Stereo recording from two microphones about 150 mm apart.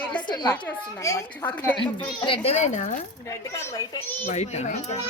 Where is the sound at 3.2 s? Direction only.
20° left (ahead or behind).